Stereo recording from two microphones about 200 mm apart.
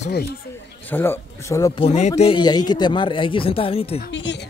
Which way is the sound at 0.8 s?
10° left (ahead or behind).